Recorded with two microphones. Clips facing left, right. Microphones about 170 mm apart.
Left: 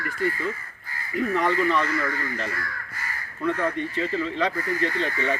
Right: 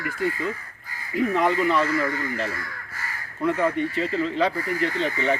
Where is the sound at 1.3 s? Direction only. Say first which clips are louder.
Right 1 dB; 15° right (ahead or behind).